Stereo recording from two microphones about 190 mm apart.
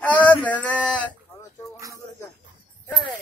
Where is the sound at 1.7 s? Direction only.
15° right (ahead or behind).